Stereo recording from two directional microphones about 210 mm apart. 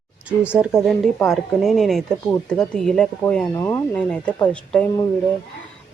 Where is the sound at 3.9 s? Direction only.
5° left (ahead or behind).